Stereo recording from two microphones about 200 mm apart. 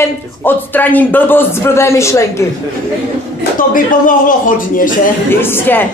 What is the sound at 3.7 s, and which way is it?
A woman's voice, 40° left (ahead or behind).